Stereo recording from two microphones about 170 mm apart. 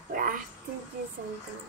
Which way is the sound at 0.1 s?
55° right (ahead or behind).